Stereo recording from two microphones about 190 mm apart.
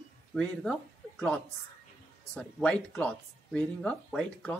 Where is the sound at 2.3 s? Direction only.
5° left (ahead or behind).